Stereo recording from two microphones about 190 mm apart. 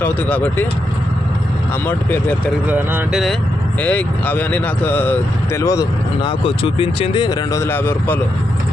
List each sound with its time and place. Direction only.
0.0 s speech: 10° left (ahead or behind)
1.9 s speech: 10° left (ahead or behind)
2.6 s speech: 10° right (ahead or behind)
3.8 s speech: 10° left (ahead or behind)
6.2 s speech: 30° left (ahead or behind); by 8.2 s 10° left (ahead or behind)